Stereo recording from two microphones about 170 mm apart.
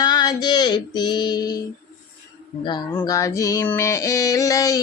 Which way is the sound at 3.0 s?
20° left (ahead or behind).